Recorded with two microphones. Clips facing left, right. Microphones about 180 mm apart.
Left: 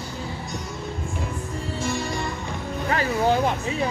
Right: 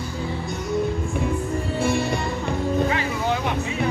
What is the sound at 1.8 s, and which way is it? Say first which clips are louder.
Music: right 5 dB; 60° right (ahead or behind).